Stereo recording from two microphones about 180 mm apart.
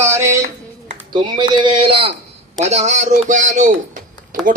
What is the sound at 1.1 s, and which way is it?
A man's voice, 25° right (ahead or behind).